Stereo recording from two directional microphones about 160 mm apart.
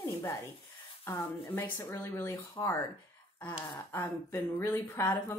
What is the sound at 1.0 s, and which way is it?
Speech, 15° left (ahead or behind).